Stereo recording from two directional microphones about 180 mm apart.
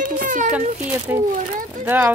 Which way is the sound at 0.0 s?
50° right (ahead or behind).